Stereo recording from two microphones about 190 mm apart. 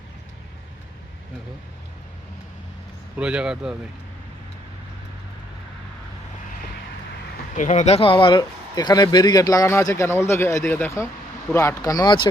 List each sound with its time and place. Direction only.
3.2 s speech: 5° right (ahead or behind)
7.5 s speech: 40° left (ahead or behind)